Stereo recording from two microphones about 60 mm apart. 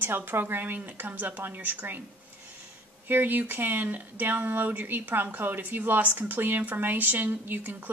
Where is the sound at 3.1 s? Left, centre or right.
Right.